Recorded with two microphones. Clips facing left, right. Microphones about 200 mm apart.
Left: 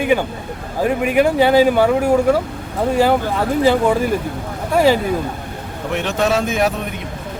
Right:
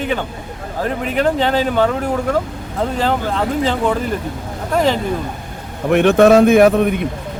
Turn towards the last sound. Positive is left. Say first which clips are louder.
# right 9 dB
turn(degrees=-55)  # may be behind; listen again after turning